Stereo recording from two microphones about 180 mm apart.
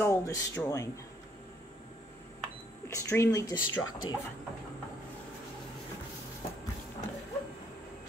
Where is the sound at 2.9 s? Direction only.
15° left (ahead or behind).